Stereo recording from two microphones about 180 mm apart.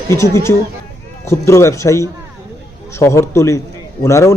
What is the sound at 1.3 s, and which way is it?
A man's voice, 15° left (ahead or behind).